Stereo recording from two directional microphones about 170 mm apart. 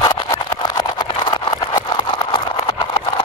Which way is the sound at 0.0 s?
25° left (ahead or behind).